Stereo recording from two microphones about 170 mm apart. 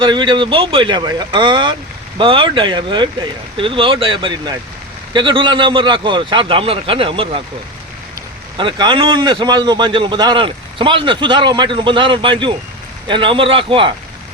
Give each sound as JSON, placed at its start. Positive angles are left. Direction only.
{"t": 0.0, "sound": "a man's voice", "side_deg": -25}
{"t": 8.5, "sound": "a man's voice", "side_deg": -25}